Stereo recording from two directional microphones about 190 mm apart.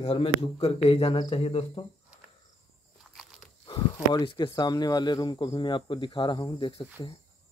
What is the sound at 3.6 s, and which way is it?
Speech, 25° left (ahead or behind).